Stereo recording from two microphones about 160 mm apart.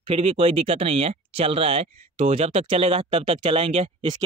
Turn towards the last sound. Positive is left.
turn(degrees=-30)  # may be behind; listen again after turning